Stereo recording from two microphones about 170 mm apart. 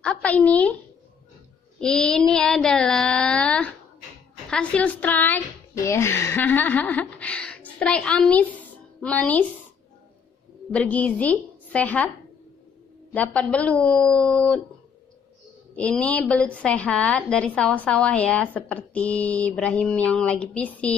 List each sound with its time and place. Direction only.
0.0 s speech: 5° left (ahead or behind)
1.8 s a sound: 5° left (ahead or behind)
4.5 s speech: 5° left (ahead or behind)
10.7 s a woman's voice: 10° left (ahead or behind)
13.1 s a woman's voice: 10° left (ahead or behind)
15.7 s a woman's voice: 5° left (ahead or behind)